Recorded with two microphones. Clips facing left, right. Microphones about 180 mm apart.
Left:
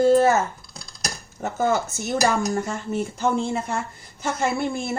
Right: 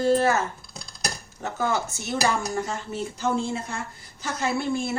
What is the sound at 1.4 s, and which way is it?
Speech, 45° left (ahead or behind).